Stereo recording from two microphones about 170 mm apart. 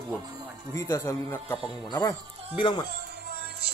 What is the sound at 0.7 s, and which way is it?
A man's voice, 15° left (ahead or behind).